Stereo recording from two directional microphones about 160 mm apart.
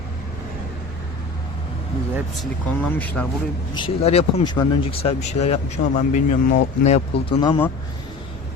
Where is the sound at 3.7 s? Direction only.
35° left (ahead or behind).